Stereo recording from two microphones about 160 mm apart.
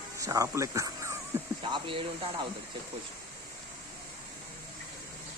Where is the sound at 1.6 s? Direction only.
30° right (ahead or behind).